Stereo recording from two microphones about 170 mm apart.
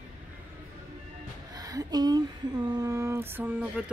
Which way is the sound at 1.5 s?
20° right (ahead or behind).